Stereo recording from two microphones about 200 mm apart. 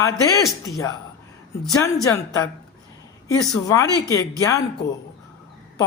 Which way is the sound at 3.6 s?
15° left (ahead or behind).